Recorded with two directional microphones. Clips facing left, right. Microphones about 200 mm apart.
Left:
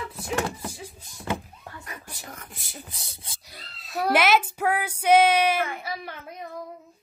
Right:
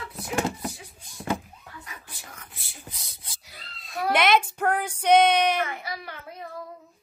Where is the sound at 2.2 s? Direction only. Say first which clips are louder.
Left 5 dB; 45° left (ahead or behind).